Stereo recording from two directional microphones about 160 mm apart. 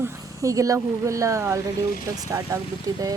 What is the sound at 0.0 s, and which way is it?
Speech, 20° right (ahead or behind).